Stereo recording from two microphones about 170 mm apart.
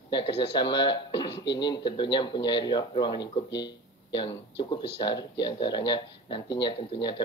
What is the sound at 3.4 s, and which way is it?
Speech, 90° left.